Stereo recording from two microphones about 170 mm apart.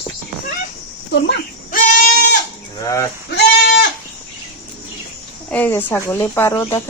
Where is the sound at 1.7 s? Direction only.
50° left (ahead or behind).